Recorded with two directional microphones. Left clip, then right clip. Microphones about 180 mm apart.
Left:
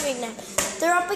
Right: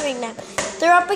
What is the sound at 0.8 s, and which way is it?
Speech, 20° right (ahead or behind).